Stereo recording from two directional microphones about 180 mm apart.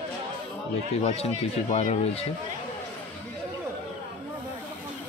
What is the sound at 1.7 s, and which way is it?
Speech, 40° left (ahead or behind).